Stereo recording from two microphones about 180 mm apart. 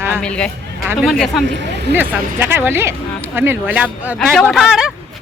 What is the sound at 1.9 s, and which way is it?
Speech, 10° right (ahead or behind).